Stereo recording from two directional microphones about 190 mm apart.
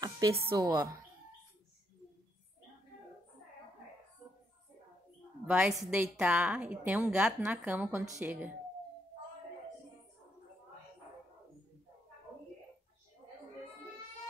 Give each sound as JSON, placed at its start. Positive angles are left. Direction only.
{"t": 0.0, "sound": "a woman's voice", "side_deg": -15}
{"t": 5.5, "sound": "a woman's voice", "side_deg": -5}